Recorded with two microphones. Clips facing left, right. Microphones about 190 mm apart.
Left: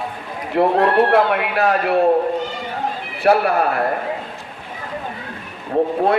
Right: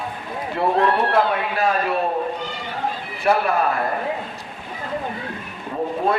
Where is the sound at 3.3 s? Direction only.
60° left (ahead or behind).